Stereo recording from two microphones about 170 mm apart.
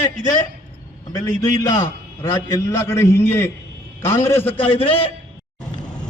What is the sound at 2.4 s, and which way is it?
A man's voice, 20° left (ahead or behind).